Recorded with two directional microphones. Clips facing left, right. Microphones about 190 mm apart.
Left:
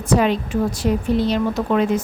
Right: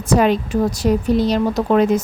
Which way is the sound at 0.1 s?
45° right (ahead or behind).